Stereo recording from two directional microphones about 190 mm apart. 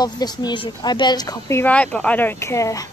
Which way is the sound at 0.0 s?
20° left (ahead or behind).